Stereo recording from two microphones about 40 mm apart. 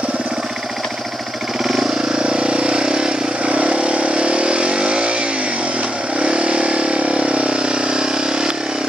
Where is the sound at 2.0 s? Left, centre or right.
Centre.